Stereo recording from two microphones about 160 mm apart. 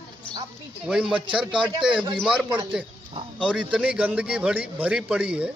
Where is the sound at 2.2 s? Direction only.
5° right (ahead or behind).